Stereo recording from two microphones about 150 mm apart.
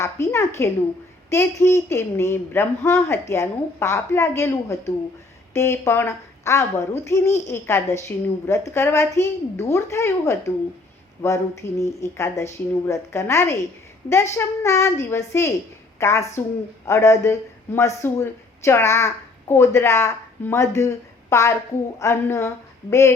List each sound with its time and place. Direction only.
0.0 s a woman's voice: 20° left (ahead or behind)